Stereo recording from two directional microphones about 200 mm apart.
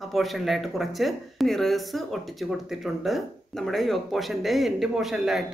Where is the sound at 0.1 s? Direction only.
Centre (ahead or behind).